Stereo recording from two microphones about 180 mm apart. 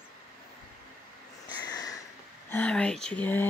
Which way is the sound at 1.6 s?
20° left (ahead or behind).